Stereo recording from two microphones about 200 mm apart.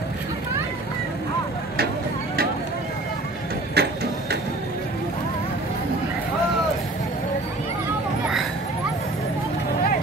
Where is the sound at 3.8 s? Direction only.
50° right (ahead or behind).